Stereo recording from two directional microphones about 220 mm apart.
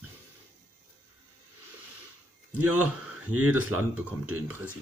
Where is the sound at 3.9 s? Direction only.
10° right (ahead or behind).